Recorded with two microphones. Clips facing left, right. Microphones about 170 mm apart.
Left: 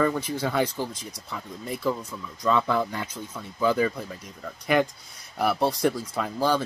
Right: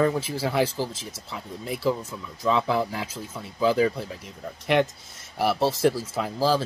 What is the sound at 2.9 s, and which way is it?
Speech, 5° right (ahead or behind).